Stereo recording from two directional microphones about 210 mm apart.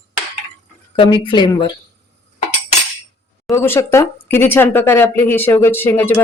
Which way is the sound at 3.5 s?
10° left (ahead or behind).